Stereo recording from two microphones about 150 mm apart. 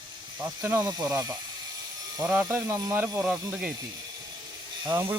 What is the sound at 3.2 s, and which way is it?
Speech, 5° right (ahead or behind).